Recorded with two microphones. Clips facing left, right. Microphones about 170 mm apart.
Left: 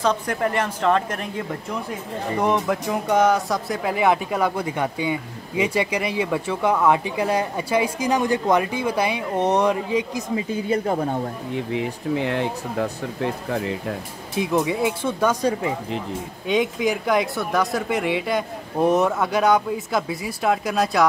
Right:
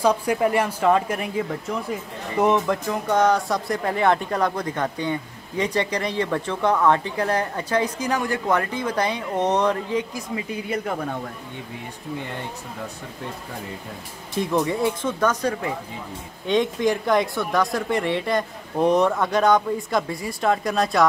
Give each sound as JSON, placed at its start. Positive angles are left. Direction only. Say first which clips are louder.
{"t": 0.0, "sound": "speech", "louder": "right 2 dB", "side_deg": -10}
{"t": 2.4, "sound": "speech", "louder": "right 2 dB", "side_deg": 0}
{"t": 10.3, "sound": "speech", "louder": "left 5 dB", "side_deg": 30}
{"t": 11.5, "sound": "speech", "louder": "left 10 dB", "side_deg": 90}
{"t": 14.3, "sound": "speech", "louder": "left 1 dB", "side_deg": 5}